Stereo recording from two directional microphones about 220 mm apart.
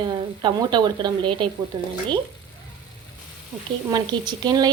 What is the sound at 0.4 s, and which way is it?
A woman's voice, 20° right (ahead or behind).